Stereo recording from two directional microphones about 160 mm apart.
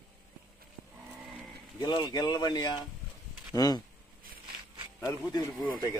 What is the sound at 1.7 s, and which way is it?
Speech, 25° left (ahead or behind).